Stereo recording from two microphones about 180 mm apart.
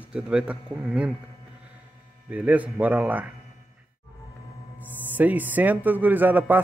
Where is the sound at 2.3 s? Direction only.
10° right (ahead or behind).